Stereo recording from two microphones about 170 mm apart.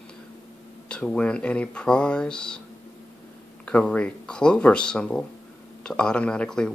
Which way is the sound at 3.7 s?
5° left (ahead or behind).